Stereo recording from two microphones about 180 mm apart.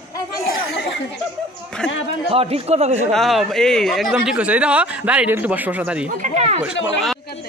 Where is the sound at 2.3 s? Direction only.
35° right (ahead or behind).